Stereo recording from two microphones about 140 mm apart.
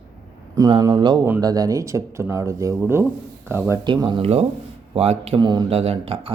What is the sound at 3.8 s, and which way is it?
Speech, 35° right (ahead or behind).